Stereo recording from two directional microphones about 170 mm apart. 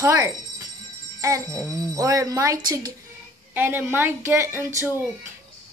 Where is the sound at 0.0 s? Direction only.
20° right (ahead or behind).